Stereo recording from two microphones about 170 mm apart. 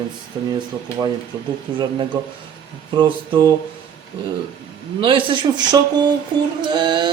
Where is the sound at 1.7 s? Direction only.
25° right (ahead or behind).